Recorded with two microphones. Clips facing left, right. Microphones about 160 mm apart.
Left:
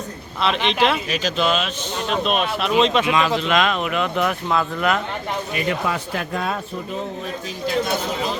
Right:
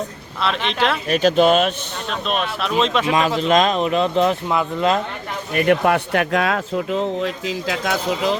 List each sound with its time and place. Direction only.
0.4 s speech: centre (ahead or behind)
1.1 s speech: 50° right (ahead or behind)
2.0 s speech: 5° left (ahead or behind)
3.1 s speech: 40° right (ahead or behind)
5.5 s speech: 60° right (ahead or behind); by 8.4 s 90° right